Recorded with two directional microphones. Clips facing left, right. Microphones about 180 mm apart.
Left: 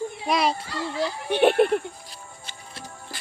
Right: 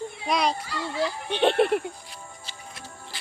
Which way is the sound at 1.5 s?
Centre (ahead or behind).